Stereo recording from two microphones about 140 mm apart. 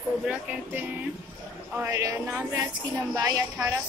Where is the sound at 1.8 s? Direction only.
20° right (ahead or behind).